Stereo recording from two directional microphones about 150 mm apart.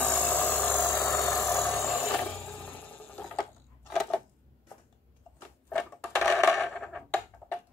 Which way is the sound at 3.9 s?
5° left (ahead or behind).